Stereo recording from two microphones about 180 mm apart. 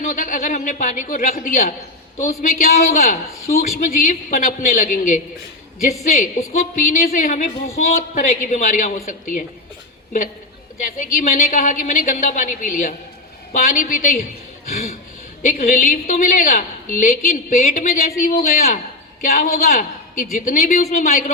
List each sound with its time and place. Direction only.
0.0 s a man's voice: 45° left (ahead or behind)
10.8 s speech: 45° left (ahead or behind)
15.4 s a woman's voice: 45° left (ahead or behind)